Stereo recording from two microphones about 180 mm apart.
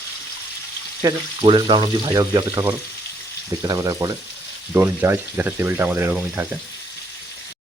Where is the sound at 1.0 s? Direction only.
25° right (ahead or behind).